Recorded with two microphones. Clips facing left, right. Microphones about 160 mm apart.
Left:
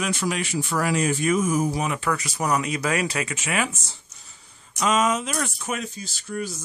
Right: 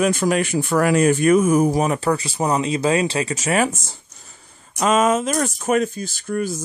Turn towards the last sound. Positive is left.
turn(degrees=-50)  # may be behind; listen again after turning